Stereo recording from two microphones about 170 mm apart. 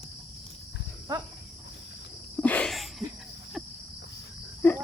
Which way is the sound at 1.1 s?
20° right (ahead or behind).